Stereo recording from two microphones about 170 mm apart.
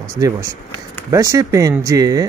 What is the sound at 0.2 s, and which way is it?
Speech, 20° right (ahead or behind).